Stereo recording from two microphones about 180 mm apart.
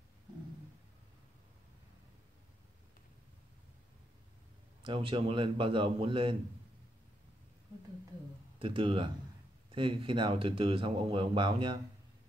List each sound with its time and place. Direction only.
4.8 s speech: 30° right (ahead or behind)
8.5 s speech: 30° right (ahead or behind)